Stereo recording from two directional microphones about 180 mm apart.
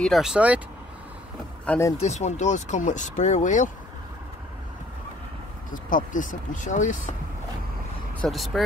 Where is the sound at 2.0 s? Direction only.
40° left (ahead or behind).